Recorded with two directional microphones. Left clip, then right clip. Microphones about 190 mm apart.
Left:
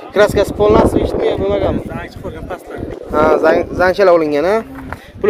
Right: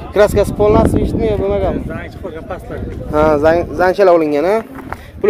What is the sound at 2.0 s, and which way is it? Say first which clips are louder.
Speech: even; 70° left (ahead or behind).